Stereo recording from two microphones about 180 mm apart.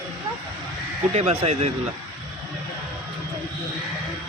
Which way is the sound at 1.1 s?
35° right (ahead or behind).